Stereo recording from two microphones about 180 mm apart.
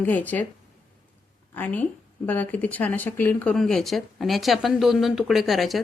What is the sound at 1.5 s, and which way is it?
Speech, 10° left (ahead or behind).